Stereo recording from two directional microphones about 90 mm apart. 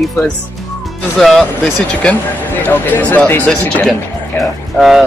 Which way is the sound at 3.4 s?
5° left (ahead or behind).